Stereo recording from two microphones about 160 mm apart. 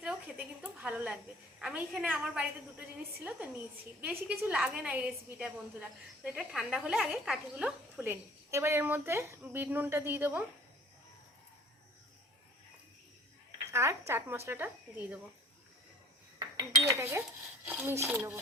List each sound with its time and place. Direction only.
0.0 s a sound: 5° right (ahead or behind)
1.6 s a woman's voice: 5° right (ahead or behind)
13.7 s a woman's voice: 15° right (ahead or behind)
16.9 s a woman's voice: 15° right (ahead or behind)